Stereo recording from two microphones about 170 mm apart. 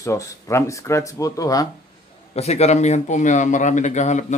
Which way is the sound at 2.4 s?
40° left (ahead or behind).